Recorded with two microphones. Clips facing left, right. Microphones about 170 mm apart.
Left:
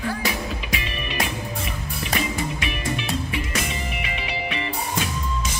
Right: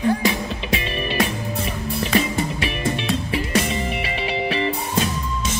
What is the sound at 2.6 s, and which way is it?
Music, 30° right (ahead or behind).